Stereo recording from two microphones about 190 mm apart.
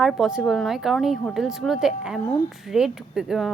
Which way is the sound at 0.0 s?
Centre (ahead or behind).